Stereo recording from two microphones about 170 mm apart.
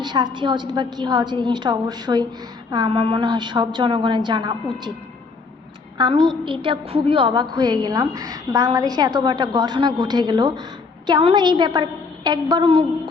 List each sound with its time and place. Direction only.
0.0 s a woman's voice: 25° right (ahead or behind)
6.0 s a woman's voice: 25° right (ahead or behind)